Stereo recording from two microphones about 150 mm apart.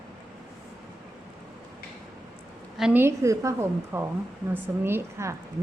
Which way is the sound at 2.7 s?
5° right (ahead or behind).